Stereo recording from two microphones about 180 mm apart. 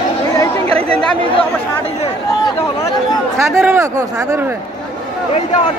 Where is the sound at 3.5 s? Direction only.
15° right (ahead or behind).